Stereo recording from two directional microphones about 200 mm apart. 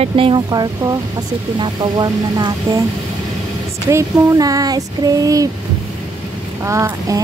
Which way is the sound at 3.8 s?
15° right (ahead or behind).